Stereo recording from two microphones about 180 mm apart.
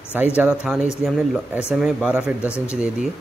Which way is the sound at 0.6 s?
5° right (ahead or behind).